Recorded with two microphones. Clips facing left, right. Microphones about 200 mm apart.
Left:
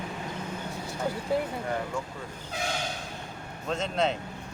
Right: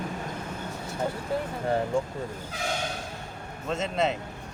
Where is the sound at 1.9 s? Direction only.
30° right (ahead or behind).